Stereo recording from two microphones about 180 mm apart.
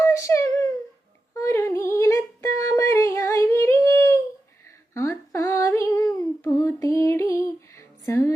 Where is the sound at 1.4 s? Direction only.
15° left (ahead or behind).